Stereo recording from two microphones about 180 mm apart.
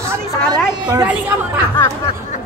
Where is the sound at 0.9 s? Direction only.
15° right (ahead or behind).